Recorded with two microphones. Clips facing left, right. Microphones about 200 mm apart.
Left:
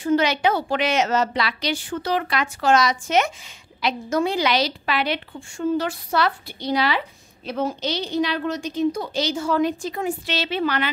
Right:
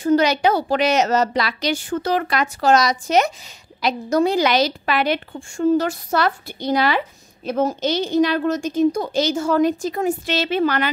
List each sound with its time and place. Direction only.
0.0 s a woman's voice: 40° right (ahead or behind)